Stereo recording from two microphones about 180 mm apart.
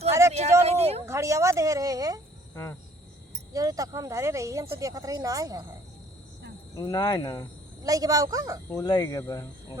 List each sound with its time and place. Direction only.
0.1 s a sound: 15° right (ahead or behind)
0.6 s a sound: 35° right (ahead or behind)
1.0 s speech: 15° right (ahead or behind)
3.5 s speech: 20° right (ahead or behind)
6.7 s speech: 20° left (ahead or behind)
7.9 s speech: 20° right (ahead or behind)
8.7 s speech: 20° left (ahead or behind)